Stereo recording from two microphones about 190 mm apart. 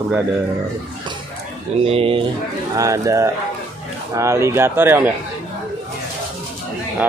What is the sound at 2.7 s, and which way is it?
Speech, 15° right (ahead or behind).